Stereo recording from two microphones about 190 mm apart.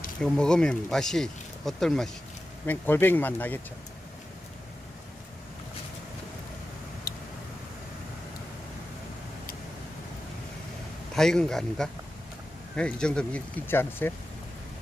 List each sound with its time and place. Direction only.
0.2 s speech: 5° left (ahead or behind)
7.1 s vehicle: 55° left (ahead or behind)
11.1 s speech: 5° left (ahead or behind)